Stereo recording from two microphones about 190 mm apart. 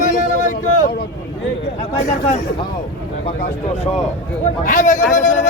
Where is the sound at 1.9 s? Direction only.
35° left (ahead or behind).